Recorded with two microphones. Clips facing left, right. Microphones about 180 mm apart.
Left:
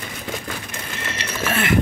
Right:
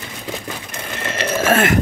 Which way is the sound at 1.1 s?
50° right (ahead or behind).